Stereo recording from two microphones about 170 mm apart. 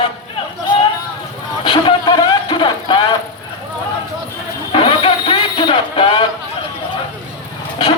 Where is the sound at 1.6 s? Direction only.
30° left (ahead or behind).